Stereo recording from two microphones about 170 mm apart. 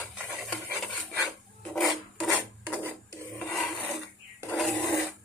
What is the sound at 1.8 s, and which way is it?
Filing, centre (ahead or behind).